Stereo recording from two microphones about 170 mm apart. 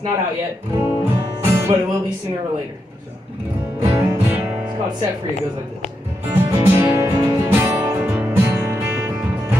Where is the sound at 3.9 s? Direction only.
15° right (ahead or behind).